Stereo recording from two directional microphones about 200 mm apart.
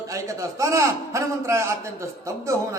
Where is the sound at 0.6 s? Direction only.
15° right (ahead or behind).